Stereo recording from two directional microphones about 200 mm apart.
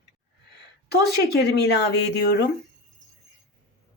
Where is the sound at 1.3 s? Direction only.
55° left (ahead or behind).